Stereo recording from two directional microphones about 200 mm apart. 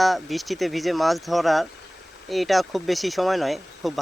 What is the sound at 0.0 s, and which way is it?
Speech, centre (ahead or behind).